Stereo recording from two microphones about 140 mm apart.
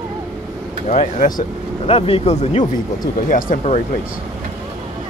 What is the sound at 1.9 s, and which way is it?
Speech, 40° left (ahead or behind).